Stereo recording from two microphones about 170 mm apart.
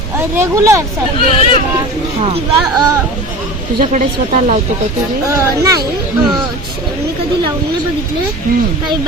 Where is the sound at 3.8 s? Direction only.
45° right (ahead or behind).